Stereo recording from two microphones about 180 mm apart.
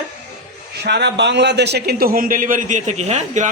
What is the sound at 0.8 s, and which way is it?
A man's voice, 70° right (ahead or behind).